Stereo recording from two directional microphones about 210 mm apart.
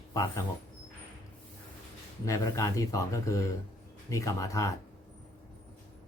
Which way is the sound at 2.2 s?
15° left (ahead or behind).